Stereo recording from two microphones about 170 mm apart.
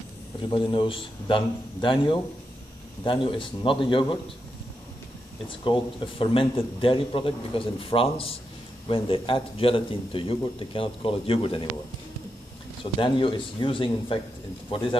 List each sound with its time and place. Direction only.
0.5 s a man's voice: 30° left (ahead or behind)
5.6 s a man's voice: 30° left (ahead or behind)
13.0 s a man's voice: 30° left (ahead or behind)